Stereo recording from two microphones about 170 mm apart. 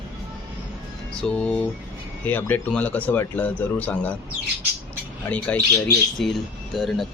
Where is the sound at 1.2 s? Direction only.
5° left (ahead or behind).